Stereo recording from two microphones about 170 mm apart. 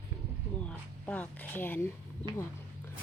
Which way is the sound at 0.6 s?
10° left (ahead or behind).